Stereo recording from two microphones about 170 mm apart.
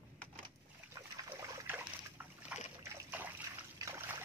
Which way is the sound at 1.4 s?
10° right (ahead or behind).